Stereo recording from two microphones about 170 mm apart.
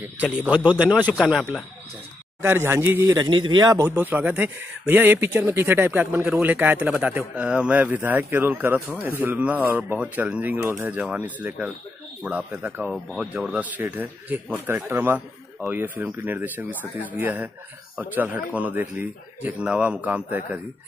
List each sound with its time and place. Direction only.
0.0 s speech: 10° right (ahead or behind)
2.4 s speech: 15° right (ahead or behind)